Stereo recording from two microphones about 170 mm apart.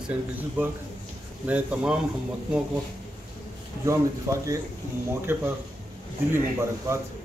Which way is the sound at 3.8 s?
15° right (ahead or behind).